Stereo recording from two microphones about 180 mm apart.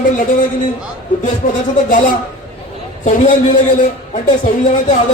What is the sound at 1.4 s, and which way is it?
Speech, 45° left (ahead or behind).